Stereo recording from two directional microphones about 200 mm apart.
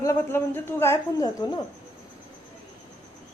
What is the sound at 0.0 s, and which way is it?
Speech, 15° left (ahead or behind).